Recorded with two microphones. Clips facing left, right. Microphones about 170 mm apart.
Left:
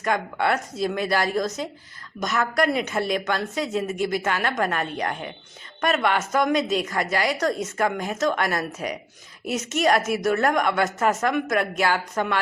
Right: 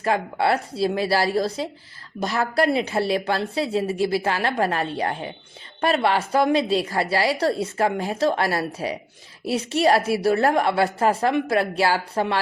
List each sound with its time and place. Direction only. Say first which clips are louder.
0.0 s speech: right 2 dB; 30° right (ahead or behind)